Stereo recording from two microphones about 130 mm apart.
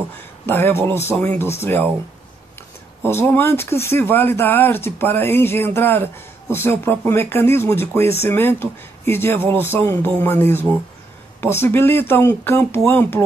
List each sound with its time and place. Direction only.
0.5 s speech: 15° left (ahead or behind)
3.0 s speech: 20° left (ahead or behind)